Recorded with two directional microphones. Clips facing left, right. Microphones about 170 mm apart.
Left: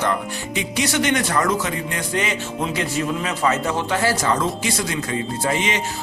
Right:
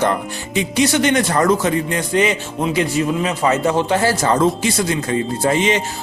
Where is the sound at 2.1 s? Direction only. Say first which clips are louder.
Right 7 dB; 20° right (ahead or behind).